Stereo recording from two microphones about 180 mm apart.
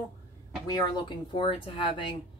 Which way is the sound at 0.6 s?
25° left (ahead or behind).